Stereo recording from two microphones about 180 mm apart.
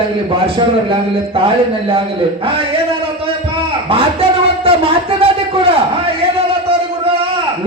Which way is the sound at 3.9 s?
30° right (ahead or behind).